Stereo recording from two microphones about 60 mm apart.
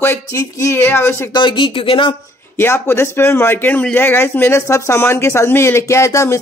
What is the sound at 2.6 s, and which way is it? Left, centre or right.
Speech, left.